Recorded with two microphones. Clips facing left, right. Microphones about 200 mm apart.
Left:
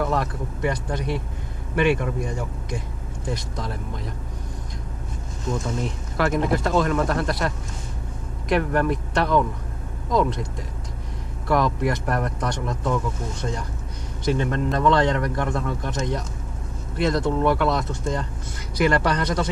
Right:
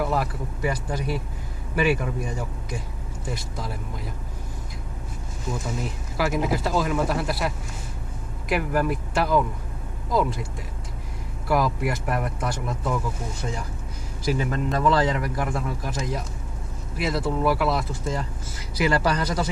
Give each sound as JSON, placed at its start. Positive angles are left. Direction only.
{"t": 0.0, "sound": "speech", "side_deg": -5}
{"t": 5.5, "sound": "speech", "side_deg": -5}
{"t": 11.4, "sound": "speech", "side_deg": -5}